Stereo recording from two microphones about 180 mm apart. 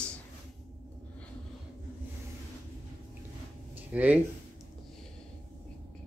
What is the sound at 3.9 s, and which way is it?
Speech, 10° right (ahead or behind).